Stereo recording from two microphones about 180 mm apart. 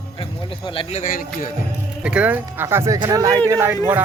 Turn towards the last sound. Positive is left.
turn(degrees=-15)  # may be behind; listen again after turning